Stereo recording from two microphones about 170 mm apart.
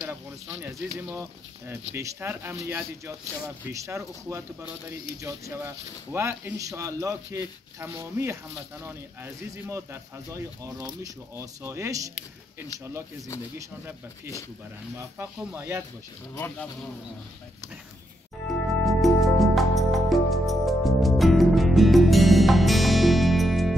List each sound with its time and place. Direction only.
0.6 s a man's voice: 15° right (ahead or behind)
16.3 s speech: 10° left (ahead or behind)
18.9 s music: centre (ahead or behind)